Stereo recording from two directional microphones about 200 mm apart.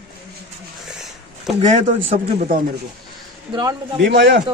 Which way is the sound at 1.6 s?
35° right (ahead or behind).